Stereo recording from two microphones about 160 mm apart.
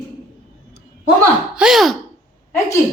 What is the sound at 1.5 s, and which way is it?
Speech, 5° right (ahead or behind).